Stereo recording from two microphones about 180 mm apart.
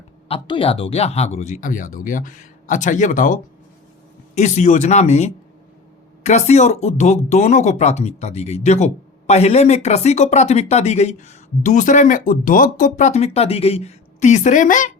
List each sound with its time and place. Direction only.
0.3 s speech: 30° left (ahead or behind); by 14.9 s 45° left (ahead or behind)